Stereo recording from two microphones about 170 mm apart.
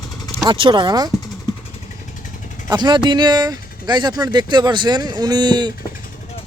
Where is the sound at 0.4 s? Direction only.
30° right (ahead or behind).